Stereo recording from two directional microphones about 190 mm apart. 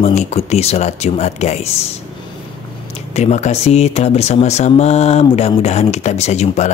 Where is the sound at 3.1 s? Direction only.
35° left (ahead or behind).